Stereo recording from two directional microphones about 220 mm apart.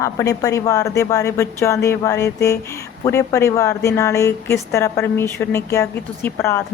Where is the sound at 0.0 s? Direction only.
15° left (ahead or behind).